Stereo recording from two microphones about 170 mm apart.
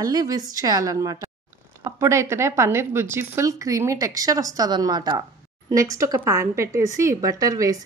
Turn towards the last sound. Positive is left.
turn(degrees=-20)  # may be behind; listen again after turning